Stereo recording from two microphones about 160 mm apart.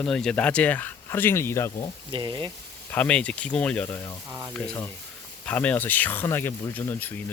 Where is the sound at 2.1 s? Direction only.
30° right (ahead or behind).